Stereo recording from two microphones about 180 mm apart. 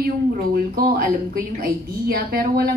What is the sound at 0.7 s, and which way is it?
A woman's voice, 55° right (ahead or behind).